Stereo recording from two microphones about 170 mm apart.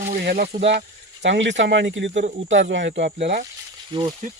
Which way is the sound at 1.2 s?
90° right.